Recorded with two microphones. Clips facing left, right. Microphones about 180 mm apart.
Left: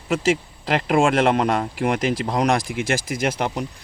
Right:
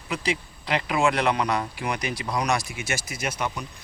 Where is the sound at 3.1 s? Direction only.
75° left (ahead or behind).